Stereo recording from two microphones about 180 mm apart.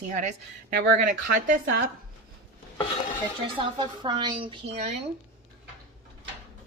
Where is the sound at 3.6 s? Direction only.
25° right (ahead or behind).